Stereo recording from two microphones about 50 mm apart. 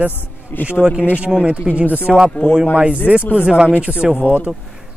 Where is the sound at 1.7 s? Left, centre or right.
Right.